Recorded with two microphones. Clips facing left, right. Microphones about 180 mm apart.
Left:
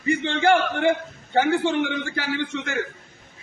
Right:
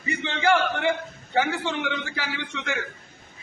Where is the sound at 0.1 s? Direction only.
50° left (ahead or behind).